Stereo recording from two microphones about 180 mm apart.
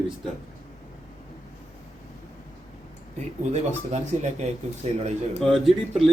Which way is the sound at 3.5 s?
40° right (ahead or behind).